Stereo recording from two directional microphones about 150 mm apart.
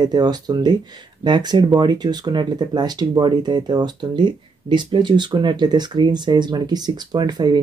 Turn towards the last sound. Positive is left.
turn(degrees=-30)  # may be behind; listen again after turning